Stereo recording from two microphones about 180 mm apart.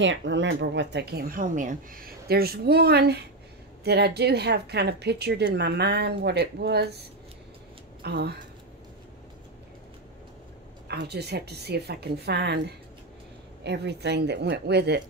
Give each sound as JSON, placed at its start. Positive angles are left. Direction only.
{"t": 0.0, "sound": "speech", "side_deg": -85}
{"t": 8.0, "sound": "speech", "side_deg": -65}
{"t": 10.9, "sound": "speech", "side_deg": -65}